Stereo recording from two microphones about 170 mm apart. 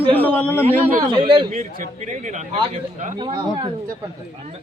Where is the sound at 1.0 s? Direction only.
30° right (ahead or behind).